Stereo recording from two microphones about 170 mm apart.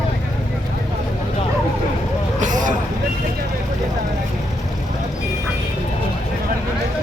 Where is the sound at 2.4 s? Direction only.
50° right (ahead or behind).